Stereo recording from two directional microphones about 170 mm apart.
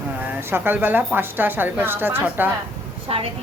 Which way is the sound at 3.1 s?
35° right (ahead or behind).